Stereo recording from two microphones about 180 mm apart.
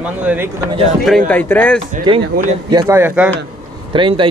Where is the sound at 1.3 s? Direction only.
10° left (ahead or behind).